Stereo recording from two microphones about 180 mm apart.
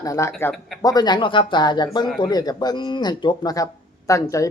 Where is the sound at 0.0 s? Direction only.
15° left (ahead or behind).